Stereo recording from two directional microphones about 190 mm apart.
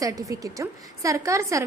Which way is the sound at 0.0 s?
15° right (ahead or behind).